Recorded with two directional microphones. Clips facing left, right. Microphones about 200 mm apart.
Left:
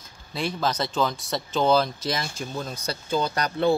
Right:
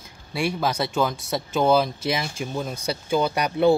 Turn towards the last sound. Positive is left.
turn(degrees=-10)  # may be behind; listen again after turning